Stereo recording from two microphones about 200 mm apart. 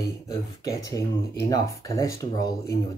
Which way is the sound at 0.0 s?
15° left (ahead or behind).